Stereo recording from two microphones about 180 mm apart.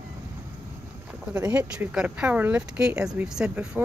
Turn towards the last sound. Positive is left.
turn(degrees=-5)  # may be behind; listen again after turning